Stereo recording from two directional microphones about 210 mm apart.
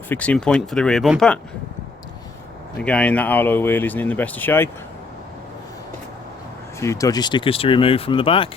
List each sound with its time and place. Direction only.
0.1 s speech: 5° left (ahead or behind)
2.7 s speech: 5° left (ahead or behind)
6.7 s speech: 15° left (ahead or behind)